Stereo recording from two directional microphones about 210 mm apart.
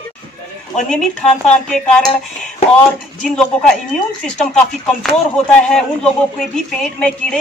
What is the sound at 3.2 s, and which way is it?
Speech, 5° left (ahead or behind).